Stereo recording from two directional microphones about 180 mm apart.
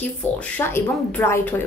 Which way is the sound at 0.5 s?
10° left (ahead or behind).